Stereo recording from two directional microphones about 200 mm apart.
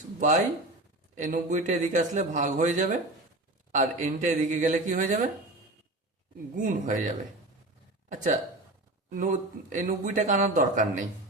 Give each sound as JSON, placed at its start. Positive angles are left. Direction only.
{"t": 0.2, "sound": "a man's voice", "side_deg": -40}
{"t": 6.6, "sound": "a man's voice", "side_deg": -40}
{"t": 8.1, "sound": "a man's voice", "side_deg": -35}